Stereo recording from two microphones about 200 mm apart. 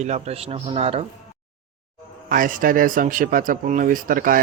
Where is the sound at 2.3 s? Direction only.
45° right (ahead or behind).